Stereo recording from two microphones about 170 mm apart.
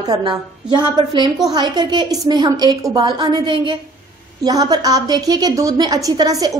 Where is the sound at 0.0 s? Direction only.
25° right (ahead or behind).